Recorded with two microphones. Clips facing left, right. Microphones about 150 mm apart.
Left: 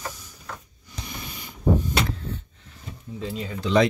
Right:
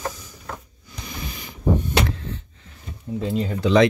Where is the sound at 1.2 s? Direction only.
90° right.